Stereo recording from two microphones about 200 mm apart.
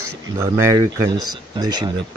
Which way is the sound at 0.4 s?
15° right (ahead or behind).